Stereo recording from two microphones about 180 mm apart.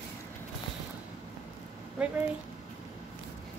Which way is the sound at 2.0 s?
5° right (ahead or behind).